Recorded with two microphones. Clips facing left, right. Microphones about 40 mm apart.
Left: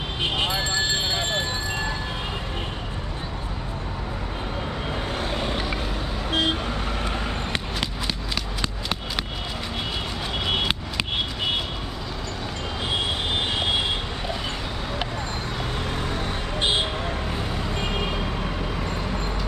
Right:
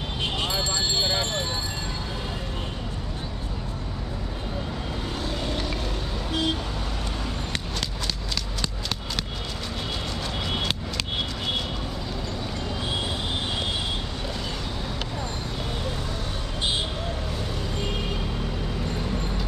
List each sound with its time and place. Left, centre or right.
0.2 s vehicle: left
5.2 s vehicle: left
18.4 s vehicle: left